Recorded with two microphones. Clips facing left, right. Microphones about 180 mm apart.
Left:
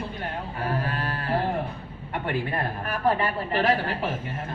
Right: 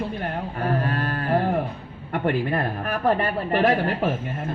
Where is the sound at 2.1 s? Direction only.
50° right (ahead or behind).